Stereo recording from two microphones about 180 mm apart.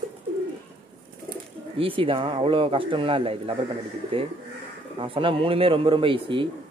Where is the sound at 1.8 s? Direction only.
30° right (ahead or behind).